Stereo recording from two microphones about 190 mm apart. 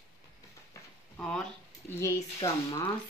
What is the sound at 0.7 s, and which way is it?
Speech, 5° left (ahead or behind).